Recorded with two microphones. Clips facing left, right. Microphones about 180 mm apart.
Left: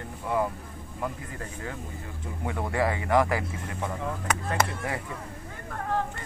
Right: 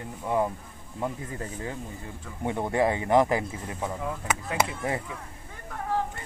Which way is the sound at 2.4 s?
25° right (ahead or behind).